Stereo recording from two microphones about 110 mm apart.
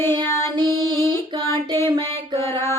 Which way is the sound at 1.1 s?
45° right (ahead or behind).